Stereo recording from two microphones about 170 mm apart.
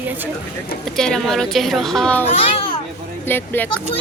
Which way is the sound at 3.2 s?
10° left (ahead or behind).